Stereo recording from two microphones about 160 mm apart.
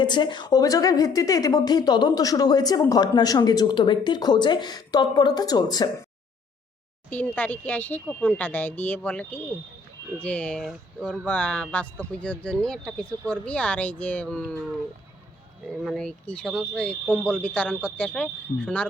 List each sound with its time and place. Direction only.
0.0 s speech: 30° left (ahead or behind)
7.3 s speech: 10° left (ahead or behind)
15.6 s speech: centre (ahead or behind)